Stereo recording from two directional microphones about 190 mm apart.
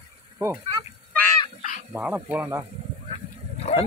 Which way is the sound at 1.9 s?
10° right (ahead or behind).